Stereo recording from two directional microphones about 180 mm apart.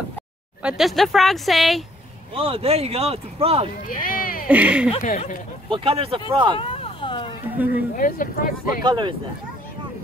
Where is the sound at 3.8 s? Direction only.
50° left (ahead or behind).